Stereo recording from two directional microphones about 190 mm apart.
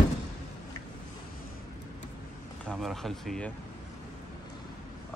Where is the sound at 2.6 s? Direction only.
Centre (ahead or behind).